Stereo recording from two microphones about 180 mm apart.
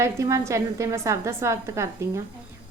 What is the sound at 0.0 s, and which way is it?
A woman's voice, 15° right (ahead or behind).